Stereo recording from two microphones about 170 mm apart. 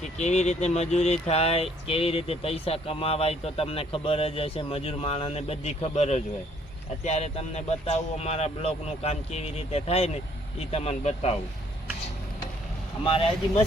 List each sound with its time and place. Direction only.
0.2 s speech: 40° left (ahead or behind)
13.1 s speech: 30° left (ahead or behind)